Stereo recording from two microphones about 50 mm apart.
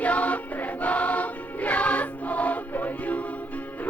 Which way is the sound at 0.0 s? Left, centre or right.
Left.